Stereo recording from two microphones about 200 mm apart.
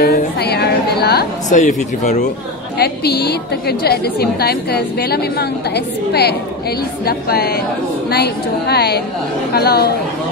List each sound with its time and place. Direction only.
0.0 s a woman's voice: 50° left (ahead or behind)
2.8 s a woman's voice: 55° left (ahead or behind)
7.1 s a woman's voice: 50° left (ahead or behind)